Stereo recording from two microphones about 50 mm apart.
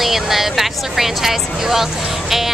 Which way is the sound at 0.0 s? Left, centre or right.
Centre.